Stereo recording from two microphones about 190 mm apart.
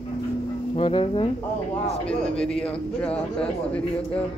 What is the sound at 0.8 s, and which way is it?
Speech, 30° left (ahead or behind).